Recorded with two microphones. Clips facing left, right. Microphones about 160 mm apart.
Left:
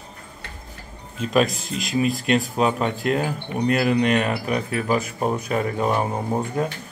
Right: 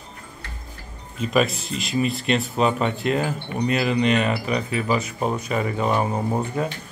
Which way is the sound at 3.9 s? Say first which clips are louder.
Even; 55° left (ahead or behind).